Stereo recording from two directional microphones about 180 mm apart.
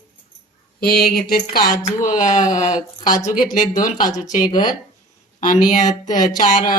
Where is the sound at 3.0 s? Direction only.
20° left (ahead or behind).